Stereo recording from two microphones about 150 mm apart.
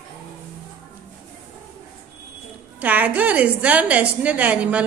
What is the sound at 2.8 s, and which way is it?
A woman's voice, 10° right (ahead or behind).